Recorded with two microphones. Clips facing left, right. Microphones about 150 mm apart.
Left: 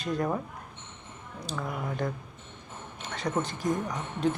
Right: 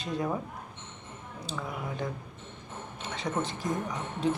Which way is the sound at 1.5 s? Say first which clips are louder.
Left 3 dB; centre (ahead or behind).